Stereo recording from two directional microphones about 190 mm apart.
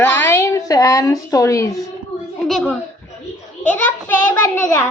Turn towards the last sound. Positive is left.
turn(degrees=10)  # may be behind; listen again after turning